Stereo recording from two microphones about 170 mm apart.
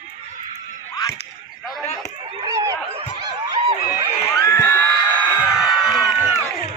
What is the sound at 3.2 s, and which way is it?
Snicker, 25° right (ahead or behind).